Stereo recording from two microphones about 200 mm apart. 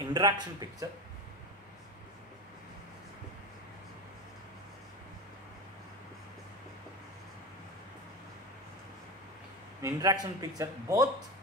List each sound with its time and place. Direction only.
0.1 s speech: 20° right (ahead or behind)
9.8 s speech: 15° right (ahead or behind)